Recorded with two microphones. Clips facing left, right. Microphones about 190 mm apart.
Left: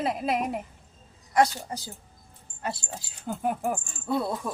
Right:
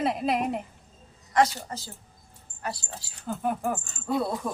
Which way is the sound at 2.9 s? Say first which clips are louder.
Even; 10° left (ahead or behind).